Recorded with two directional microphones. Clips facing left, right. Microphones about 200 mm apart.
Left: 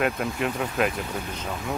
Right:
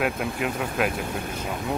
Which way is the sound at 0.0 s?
Centre (ahead or behind).